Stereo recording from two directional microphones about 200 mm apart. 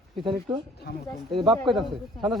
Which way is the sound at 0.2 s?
20° right (ahead or behind).